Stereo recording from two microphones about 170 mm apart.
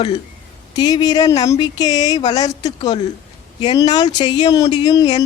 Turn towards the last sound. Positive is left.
turn(degrees=25)  # may be behind; listen again after turning